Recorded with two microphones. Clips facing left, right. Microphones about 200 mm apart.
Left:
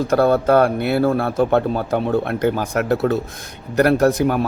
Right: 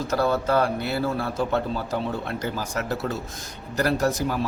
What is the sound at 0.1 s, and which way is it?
Speech, 55° left (ahead or behind).